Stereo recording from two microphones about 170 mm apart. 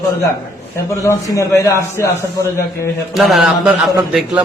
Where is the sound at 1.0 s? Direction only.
20° left (ahead or behind).